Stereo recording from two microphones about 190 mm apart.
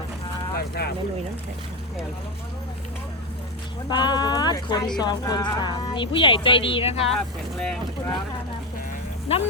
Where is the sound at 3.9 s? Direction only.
20° left (ahead or behind).